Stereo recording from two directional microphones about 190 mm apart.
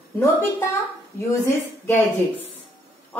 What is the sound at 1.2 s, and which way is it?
Speech, 15° left (ahead or behind).